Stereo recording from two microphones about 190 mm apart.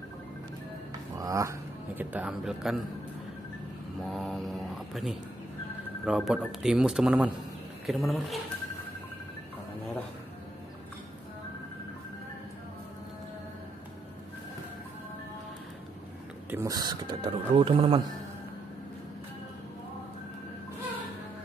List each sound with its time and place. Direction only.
1.1 s speech: 15° right (ahead or behind); by 2.8 s centre (ahead or behind)
4.1 s speech: centre (ahead or behind)
16.4 s speech: 15° right (ahead or behind)